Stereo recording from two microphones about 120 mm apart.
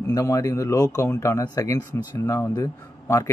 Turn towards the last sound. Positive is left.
turn(degrees=25)  # may be behind; listen again after turning